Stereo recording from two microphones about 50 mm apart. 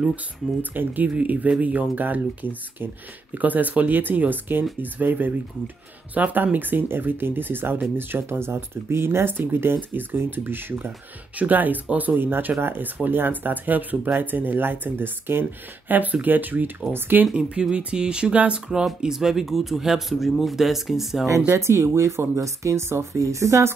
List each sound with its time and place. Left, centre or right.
0.1 s speech: right
3.3 s speech: right
9.4 s speech: right
11.3 s speech: right
15.9 s speech: right
17.3 s speech: centre
18.9 s speech: centre
21.5 s speech: right